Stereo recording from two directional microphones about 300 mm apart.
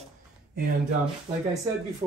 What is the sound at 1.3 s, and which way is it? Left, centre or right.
Speech, centre.